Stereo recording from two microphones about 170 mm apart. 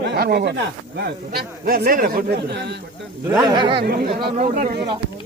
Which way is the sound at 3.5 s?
30° right (ahead or behind).